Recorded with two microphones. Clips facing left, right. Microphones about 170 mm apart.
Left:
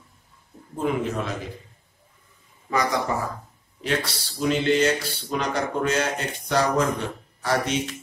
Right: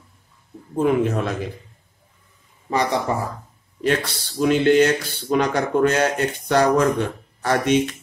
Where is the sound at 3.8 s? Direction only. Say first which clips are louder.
Right 5 dB; 55° right (ahead or behind).